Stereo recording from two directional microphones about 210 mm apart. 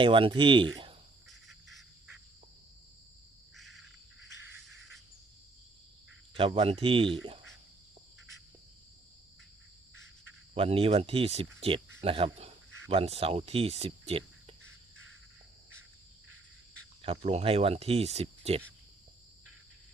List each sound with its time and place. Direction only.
0.0 s speech: 25° right (ahead or behind)
1.3 s bird: centre (ahead or behind)
6.3 s speech: 25° right (ahead or behind)
10.5 s speech: 25° right (ahead or behind)
17.0 s speech: 30° right (ahead or behind)